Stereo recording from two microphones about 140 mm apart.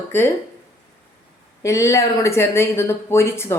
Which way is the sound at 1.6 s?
20° left (ahead or behind).